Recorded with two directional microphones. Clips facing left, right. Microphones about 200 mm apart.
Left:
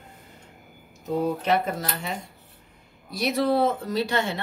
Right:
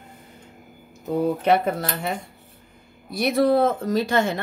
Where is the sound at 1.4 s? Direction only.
55° right (ahead or behind).